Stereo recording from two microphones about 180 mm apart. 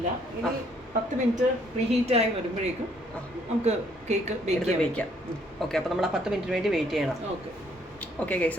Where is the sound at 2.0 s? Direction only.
35° right (ahead or behind).